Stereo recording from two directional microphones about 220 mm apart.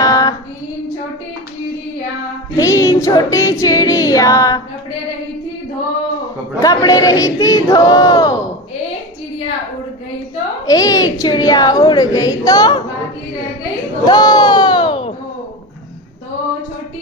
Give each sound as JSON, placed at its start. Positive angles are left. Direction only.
{"t": 0.0, "sound": "child singing", "side_deg": 15}
{"t": 2.5, "sound": "music", "side_deg": 15}
{"t": 6.6, "sound": "speech", "side_deg": 15}
{"t": 10.7, "sound": "speech", "side_deg": 15}
{"t": 14.0, "sound": "speech", "side_deg": 15}